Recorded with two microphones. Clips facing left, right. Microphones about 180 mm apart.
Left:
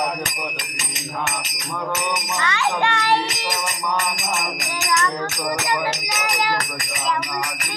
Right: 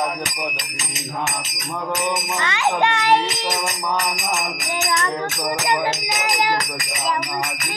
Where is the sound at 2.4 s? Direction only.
20° right (ahead or behind).